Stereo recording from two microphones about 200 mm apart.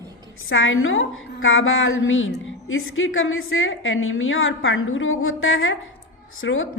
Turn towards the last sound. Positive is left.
turn(degrees=80)